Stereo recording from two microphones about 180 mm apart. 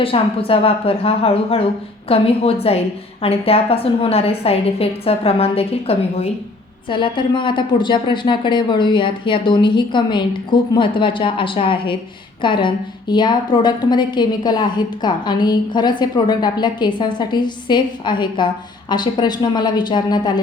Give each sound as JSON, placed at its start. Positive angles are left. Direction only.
{"t": 0.0, "sound": "a woman's voice", "side_deg": 30}